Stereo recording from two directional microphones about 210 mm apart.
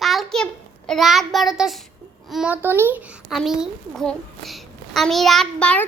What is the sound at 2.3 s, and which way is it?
A child's voice, 5° right (ahead or behind).